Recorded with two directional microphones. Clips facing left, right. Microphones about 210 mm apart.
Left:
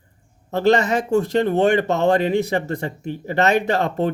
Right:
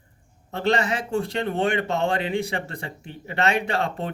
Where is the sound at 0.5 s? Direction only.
40° left (ahead or behind).